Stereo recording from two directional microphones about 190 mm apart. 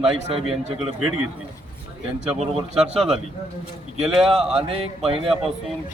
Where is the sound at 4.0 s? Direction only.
Centre (ahead or behind).